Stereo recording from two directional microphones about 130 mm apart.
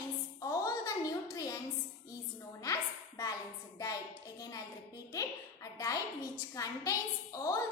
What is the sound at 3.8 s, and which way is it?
A child's voice, 30° left (ahead or behind).